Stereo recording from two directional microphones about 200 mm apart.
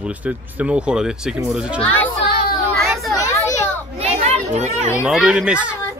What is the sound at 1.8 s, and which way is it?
Speech, 5° left (ahead or behind).